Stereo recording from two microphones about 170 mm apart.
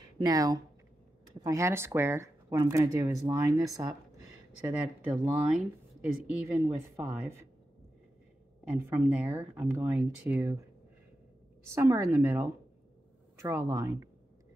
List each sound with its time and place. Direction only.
0.2 s speech: 20° right (ahead or behind)
4.7 s speech: 5° right (ahead or behind)
8.7 s speech: 15° right (ahead or behind)
11.7 s speech: 15° right (ahead or behind)